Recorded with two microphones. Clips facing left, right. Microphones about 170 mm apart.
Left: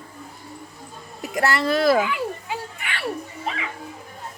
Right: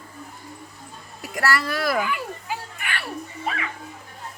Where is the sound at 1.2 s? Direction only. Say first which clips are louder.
Left 2 dB; 20° left (ahead or behind).